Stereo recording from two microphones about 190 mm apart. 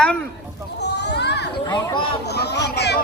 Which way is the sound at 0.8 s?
65° left (ahead or behind).